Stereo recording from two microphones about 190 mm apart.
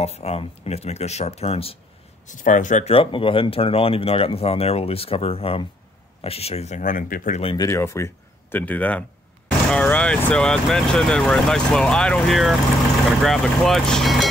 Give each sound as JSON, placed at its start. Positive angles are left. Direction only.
{"t": 0.0, "sound": "speech", "side_deg": 35}
{"t": 2.2, "sound": "speech", "side_deg": 40}
{"t": 7.5, "sound": "speech", "side_deg": 15}